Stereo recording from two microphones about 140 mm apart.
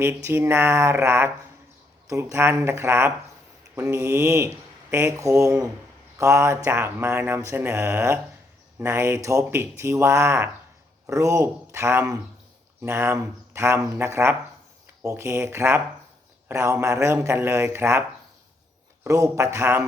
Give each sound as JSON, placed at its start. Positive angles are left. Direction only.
{"t": 0.0, "sound": "speech", "side_deg": -15}
{"t": 19.0, "sound": "speech", "side_deg": -20}